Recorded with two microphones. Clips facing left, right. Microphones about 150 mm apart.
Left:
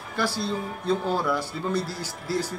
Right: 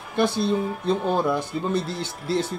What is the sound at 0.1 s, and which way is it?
Speech, 20° right (ahead or behind).